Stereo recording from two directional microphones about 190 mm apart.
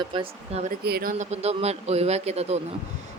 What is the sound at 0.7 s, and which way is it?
Speech, 50° right (ahead or behind).